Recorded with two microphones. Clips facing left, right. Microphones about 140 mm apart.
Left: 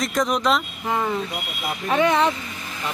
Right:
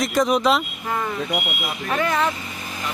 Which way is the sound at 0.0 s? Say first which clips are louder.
Right 3 dB; centre (ahead or behind).